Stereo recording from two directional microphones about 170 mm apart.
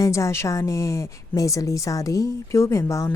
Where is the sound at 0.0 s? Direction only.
15° left (ahead or behind).